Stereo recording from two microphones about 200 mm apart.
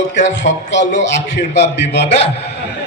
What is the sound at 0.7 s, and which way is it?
Speech, 35° left (ahead or behind).